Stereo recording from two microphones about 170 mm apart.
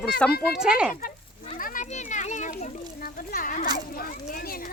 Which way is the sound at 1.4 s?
50° left (ahead or behind).